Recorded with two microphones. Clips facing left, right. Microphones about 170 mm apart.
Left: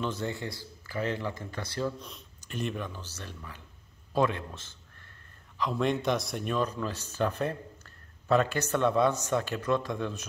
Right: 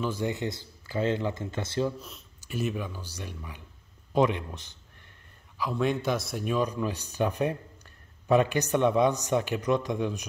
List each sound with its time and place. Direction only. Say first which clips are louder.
0.0 s speech: right 3 dB; 10° right (ahead or behind)
2.0 s a man's voice: right 1 dB; 5° right (ahead or behind)
5.6 s speech: right 1 dB; centre (ahead or behind)